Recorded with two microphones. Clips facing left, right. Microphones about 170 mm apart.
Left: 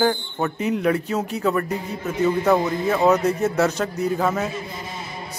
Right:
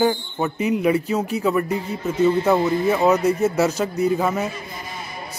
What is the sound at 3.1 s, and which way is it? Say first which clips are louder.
Speech: left 1 dB; 5° right (ahead or behind).